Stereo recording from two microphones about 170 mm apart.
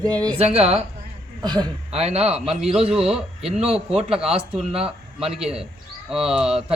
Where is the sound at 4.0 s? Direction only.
35° right (ahead or behind).